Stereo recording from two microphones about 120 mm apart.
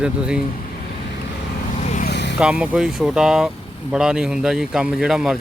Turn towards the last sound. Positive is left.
turn(degrees=-5)  # may be behind; listen again after turning